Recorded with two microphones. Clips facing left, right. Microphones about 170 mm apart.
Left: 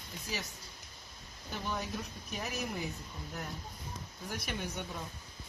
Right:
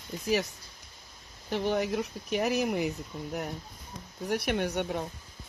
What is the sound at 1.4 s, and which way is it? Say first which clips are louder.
Speech: right 10 dB; 90° right.